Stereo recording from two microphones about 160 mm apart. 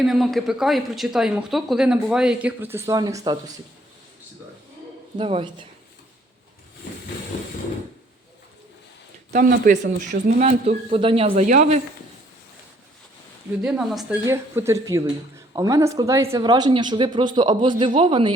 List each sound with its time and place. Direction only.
0.0 s speech: centre (ahead or behind); by 3.5 s 20° right (ahead or behind)
5.1 s a woman's voice: 35° right (ahead or behind)
9.3 s speech: 60° right (ahead or behind)
11.0 s speech: 35° right (ahead or behind); by 11.8 s 50° right (ahead or behind)
13.6 s speech: 5° right (ahead or behind)
14.3 s speech: 15° right (ahead or behind)